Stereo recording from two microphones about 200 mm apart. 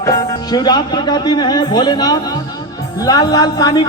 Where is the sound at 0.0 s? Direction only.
15° left (ahead or behind).